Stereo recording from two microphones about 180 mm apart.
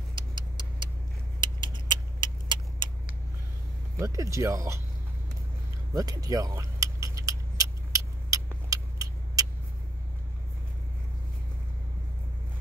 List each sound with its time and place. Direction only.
0.1 s vehicle: 25° right (ahead or behind)
4.0 s speech: 15° right (ahead or behind)
5.9 s keys jangling: 20° right (ahead or behind)